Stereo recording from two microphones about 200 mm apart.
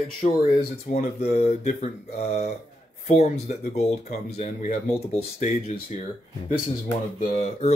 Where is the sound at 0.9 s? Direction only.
45° left (ahead or behind).